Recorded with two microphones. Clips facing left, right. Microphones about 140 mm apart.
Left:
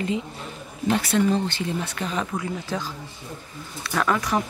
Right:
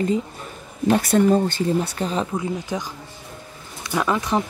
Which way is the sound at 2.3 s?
20° right (ahead or behind).